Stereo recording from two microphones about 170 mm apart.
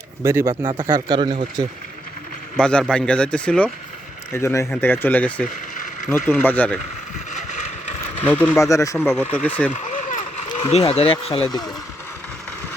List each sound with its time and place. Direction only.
0.2 s speech: 15° right (ahead or behind)
2.6 s speech: 5° left (ahead or behind)
8.3 s speech: 15° left (ahead or behind)
10.5 s speech: 35° left (ahead or behind)